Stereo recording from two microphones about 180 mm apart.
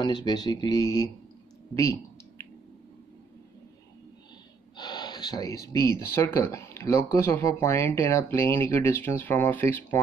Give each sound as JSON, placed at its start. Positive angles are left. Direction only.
{"t": 0.0, "sound": "speech", "side_deg": 25}
{"t": 1.8, "sound": "clicking", "side_deg": 15}
{"t": 4.7, "sound": "speech", "side_deg": 25}